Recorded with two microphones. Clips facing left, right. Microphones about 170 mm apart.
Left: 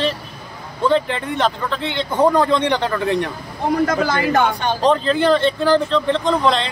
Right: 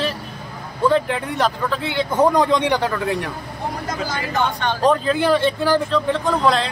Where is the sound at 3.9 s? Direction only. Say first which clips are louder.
Left 7 dB; 60° left (ahead or behind).